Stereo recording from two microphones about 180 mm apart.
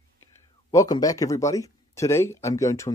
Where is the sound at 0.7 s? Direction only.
20° left (ahead or behind).